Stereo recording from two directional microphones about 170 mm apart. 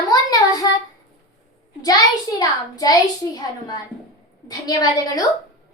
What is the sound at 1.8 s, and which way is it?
A child's voice, 20° left (ahead or behind).